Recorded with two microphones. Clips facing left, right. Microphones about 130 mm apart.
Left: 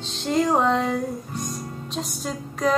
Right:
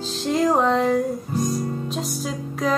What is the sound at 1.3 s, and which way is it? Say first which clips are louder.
Music: right 8 dB; 35° right (ahead or behind).